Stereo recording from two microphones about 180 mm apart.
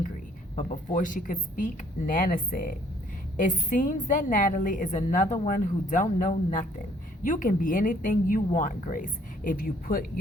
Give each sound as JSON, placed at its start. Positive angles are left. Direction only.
{"t": 0.5, "sound": "a woman's voice", "side_deg": 45}